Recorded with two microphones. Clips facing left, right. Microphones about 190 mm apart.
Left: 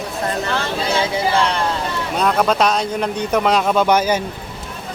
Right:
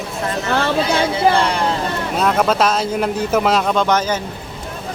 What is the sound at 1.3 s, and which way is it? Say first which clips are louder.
Speech: right 5 dB; 55° right (ahead or behind).